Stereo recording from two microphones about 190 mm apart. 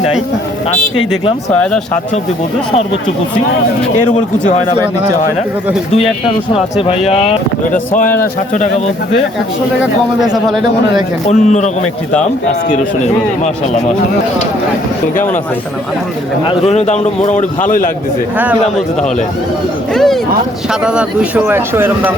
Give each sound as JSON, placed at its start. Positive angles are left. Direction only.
{"t": 6.5, "sound": "a man's voice", "side_deg": 30}
{"t": 10.2, "sound": "speech", "side_deg": -20}
{"t": 11.3, "sound": "a man's voice", "side_deg": 35}
{"t": 12.7, "sound": "a man's voice", "side_deg": 40}
{"t": 16.5, "sound": "a man's voice", "side_deg": 35}
{"t": 19.9, "sound": "speech", "side_deg": 0}